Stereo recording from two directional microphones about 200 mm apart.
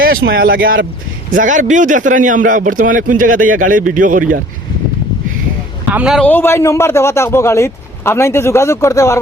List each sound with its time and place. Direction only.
0.0 s speech: 50° right (ahead or behind)
5.9 s a man's voice: 5° right (ahead or behind)
6.2 s speech: 10° left (ahead or behind)